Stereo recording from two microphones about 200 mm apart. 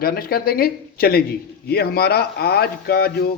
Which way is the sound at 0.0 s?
50° left (ahead or behind).